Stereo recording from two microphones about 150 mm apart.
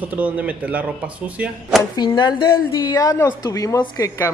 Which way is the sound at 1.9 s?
30° left (ahead or behind).